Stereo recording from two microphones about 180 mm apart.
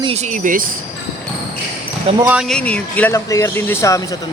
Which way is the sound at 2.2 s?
10° right (ahead or behind).